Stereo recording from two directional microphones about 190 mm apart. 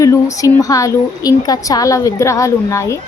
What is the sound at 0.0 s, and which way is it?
A woman's voice, 15° left (ahead or behind).